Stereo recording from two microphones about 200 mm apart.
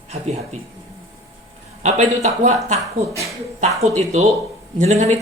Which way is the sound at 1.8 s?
35° right (ahead or behind).